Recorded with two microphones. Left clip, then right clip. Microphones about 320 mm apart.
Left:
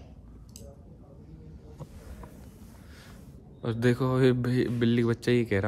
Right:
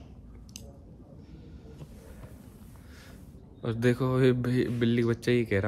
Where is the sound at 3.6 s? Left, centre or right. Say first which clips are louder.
Left 1 dB; centre.